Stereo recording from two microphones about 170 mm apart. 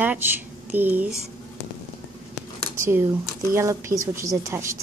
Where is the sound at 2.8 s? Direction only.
15° right (ahead or behind).